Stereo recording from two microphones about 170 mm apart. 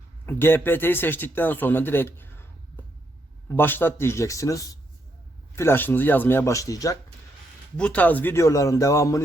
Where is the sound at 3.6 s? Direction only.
10° left (ahead or behind).